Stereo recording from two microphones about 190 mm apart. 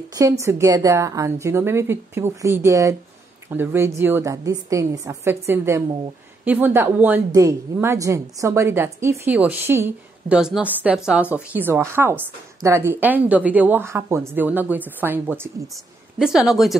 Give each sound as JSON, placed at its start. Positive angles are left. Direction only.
{"t": 0.1, "sound": "a woman's voice", "side_deg": -15}